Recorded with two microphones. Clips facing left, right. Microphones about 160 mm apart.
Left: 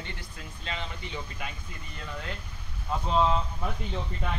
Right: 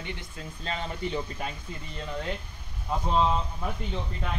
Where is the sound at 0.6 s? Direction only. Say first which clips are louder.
Right 5 dB; 40° right (ahead or behind).